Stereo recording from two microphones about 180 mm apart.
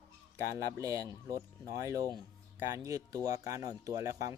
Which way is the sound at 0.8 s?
20° right (ahead or behind).